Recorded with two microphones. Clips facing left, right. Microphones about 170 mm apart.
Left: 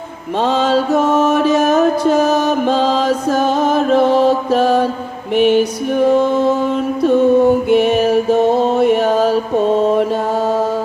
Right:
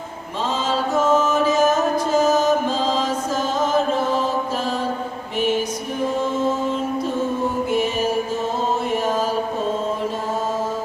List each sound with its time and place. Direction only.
0.3 s mantra: 65° left (ahead or behind)